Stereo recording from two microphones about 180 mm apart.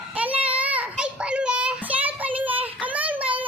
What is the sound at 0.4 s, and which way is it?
Child singing, 10° right (ahead or behind).